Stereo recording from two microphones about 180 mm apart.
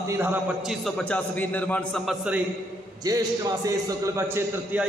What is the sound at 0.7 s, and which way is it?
A man's voice, centre (ahead or behind).